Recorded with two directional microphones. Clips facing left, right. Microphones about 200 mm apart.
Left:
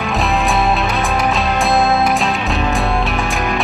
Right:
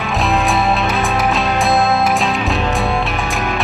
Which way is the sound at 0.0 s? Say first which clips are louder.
Even; centre (ahead or behind).